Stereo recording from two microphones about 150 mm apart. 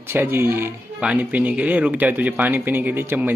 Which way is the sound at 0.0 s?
15° right (ahead or behind).